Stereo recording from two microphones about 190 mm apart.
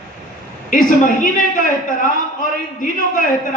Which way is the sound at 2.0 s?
45° left (ahead or behind).